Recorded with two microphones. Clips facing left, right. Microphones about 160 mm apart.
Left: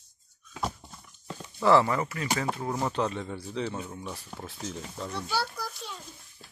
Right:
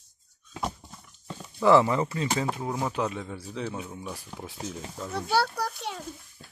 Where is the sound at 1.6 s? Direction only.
15° right (ahead or behind).